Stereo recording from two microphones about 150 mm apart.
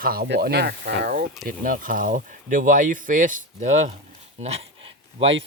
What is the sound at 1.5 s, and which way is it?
Speech, 65° right (ahead or behind).